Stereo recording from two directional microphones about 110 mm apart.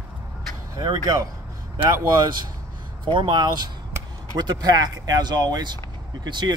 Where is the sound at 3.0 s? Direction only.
50° right (ahead or behind).